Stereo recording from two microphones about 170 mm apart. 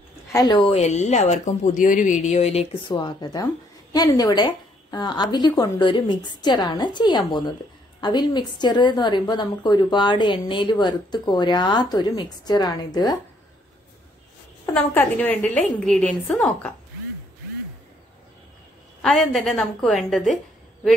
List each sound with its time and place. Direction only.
0.3 s a woman's voice: 20° left (ahead or behind)
0.7 s a woman's voice: 40° left (ahead or behind); by 13.2 s 25° left (ahead or behind)
14.7 s a woman's voice: 10° left (ahead or behind)
18.9 s a woman's voice: centre (ahead or behind)